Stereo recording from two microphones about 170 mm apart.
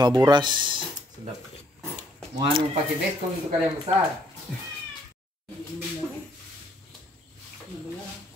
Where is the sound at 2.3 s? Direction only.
30° right (ahead or behind).